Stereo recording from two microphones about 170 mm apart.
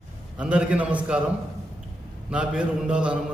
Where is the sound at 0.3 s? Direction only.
5° right (ahead or behind).